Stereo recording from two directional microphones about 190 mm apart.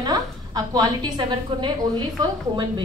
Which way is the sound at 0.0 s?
20° right (ahead or behind).